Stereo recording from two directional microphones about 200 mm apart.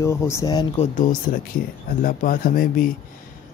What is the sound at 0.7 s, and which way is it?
Speech, 35° left (ahead or behind).